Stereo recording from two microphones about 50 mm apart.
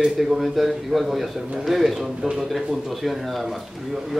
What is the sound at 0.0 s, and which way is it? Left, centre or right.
Speech, centre.